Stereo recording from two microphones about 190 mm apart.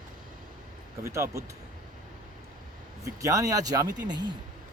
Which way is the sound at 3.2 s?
15° right (ahead or behind).